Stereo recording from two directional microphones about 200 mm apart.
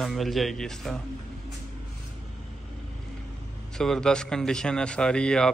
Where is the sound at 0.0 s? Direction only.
Centre (ahead or behind).